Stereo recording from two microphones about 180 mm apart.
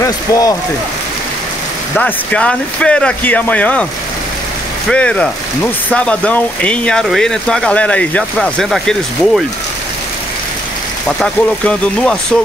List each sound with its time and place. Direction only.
0.0 s speech: 20° left (ahead or behind)
2.0 s speech: 5° left (ahead or behind)
4.8 s speech: 5° left (ahead or behind)
11.1 s speech: 5° left (ahead or behind)